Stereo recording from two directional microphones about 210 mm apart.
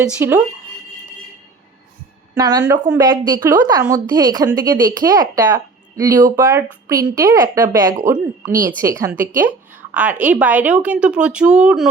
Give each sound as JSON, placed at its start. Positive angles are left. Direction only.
{"t": 0.0, "sound": "speech", "side_deg": -10}
{"t": 2.3, "sound": "a woman's voice", "side_deg": -20}